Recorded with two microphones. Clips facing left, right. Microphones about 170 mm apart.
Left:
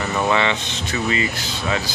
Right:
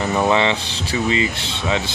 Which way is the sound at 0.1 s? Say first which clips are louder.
Right 2 dB; 25° right (ahead or behind).